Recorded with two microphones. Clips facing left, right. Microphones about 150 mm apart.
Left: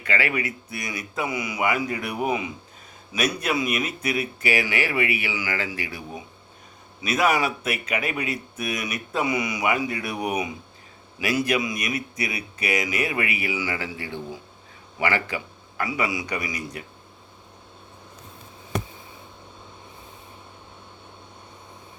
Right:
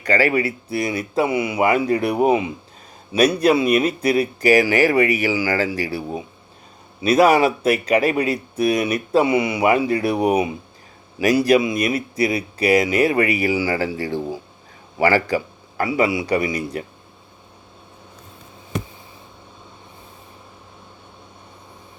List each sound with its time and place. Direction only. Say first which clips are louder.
0.0 s a man's voice: right 8 dB; 40° right (ahead or behind)